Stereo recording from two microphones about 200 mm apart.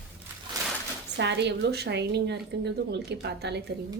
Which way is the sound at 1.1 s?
60° right (ahead or behind).